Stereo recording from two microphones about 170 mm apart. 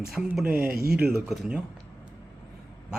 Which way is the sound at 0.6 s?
60° right (ahead or behind).